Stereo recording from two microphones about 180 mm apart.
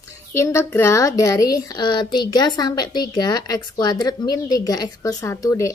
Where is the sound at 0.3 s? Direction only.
15° left (ahead or behind).